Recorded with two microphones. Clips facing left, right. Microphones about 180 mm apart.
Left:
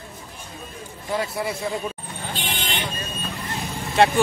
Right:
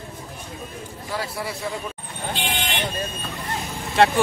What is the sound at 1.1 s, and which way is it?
Speech, 20° left (ahead or behind).